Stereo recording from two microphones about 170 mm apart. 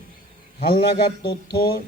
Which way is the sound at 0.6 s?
60° left (ahead or behind).